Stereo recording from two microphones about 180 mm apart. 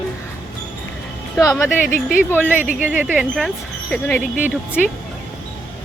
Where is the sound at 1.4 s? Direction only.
20° left (ahead or behind).